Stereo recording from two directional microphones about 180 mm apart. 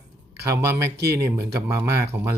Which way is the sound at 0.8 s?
65° right (ahead or behind).